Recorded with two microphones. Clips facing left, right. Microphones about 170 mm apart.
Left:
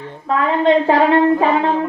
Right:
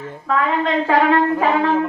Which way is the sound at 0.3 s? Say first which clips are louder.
Left 4 dB; 30° left (ahead or behind).